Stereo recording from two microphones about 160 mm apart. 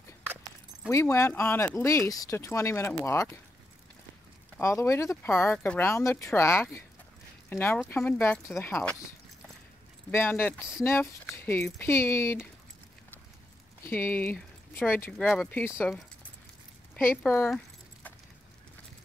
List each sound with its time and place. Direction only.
0.8 s speech: 20° left (ahead or behind)
4.6 s speech: 15° left (ahead or behind)
10.1 s speech: 15° left (ahead or behind)
13.8 s speech: 15° left (ahead or behind)
15.8 s keys jangling: 10° left (ahead or behind)
16.9 s speech: 10° left (ahead or behind)